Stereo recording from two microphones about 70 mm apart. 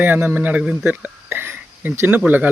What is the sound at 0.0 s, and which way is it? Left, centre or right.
A man's voice, right.